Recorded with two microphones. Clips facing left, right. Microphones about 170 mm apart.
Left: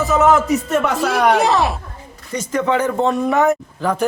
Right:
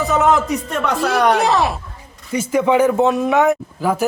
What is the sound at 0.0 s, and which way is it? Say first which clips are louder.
Speech: left 1 dB; centre (ahead or behind).